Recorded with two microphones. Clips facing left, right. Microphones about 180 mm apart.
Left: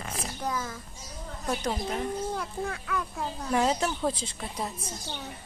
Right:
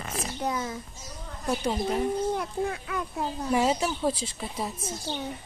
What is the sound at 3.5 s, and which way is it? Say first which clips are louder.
Speech: right 1 dB; 10° right (ahead or behind).